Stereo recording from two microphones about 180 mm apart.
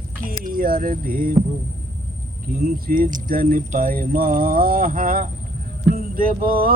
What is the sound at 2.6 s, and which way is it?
Speech, 50° right (ahead or behind).